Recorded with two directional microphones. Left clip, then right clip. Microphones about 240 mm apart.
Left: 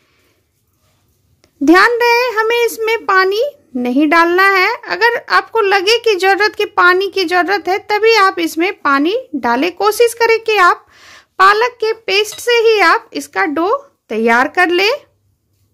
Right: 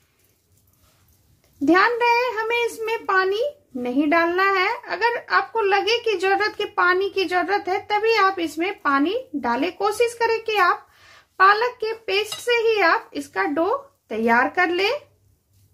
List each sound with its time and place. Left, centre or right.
1.6 s a child's voice: left